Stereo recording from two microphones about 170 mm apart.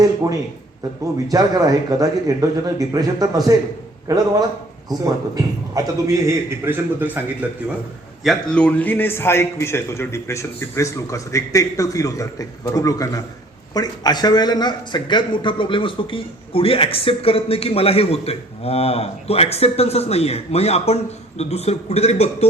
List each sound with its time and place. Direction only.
1.3 s speech: 20° right (ahead or behind)
4.9 s a man's voice: 20° right (ahead or behind); by 22.4 s 40° left (ahead or behind)